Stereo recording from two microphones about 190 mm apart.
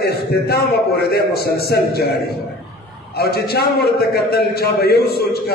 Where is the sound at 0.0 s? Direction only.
55° left (ahead or behind).